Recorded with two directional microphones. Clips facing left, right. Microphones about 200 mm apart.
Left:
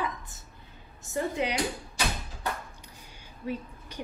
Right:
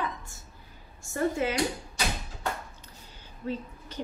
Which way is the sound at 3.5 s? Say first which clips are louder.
Right 1 dB; 10° left (ahead or behind).